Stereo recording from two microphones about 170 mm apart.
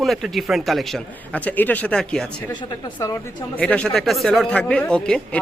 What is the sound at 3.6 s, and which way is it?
Speech, 5° left (ahead or behind).